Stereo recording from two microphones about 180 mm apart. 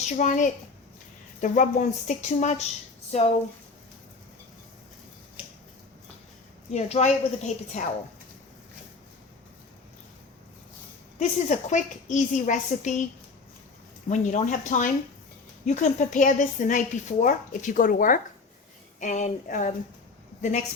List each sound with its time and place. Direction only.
0.0 s a woman's voice: 45° left (ahead or behind)
6.7 s speech: 35° left (ahead or behind)
11.2 s a woman's voice: 40° left (ahead or behind)
14.1 s a woman's voice: 40° left (ahead or behind)